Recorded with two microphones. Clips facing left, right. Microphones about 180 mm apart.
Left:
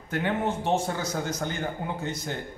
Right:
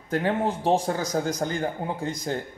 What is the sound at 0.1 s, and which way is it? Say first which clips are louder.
Speech: right 3 dB; 35° right (ahead or behind).